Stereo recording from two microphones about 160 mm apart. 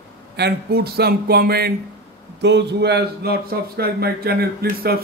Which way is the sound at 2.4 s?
90° right.